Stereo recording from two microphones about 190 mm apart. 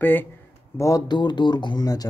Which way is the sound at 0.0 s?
10° left (ahead or behind).